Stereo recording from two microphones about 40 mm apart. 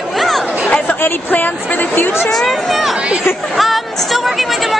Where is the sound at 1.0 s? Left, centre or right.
Left.